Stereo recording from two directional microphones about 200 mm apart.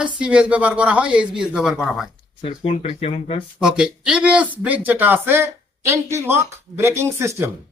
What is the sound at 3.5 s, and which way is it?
Speech, 5° right (ahead or behind).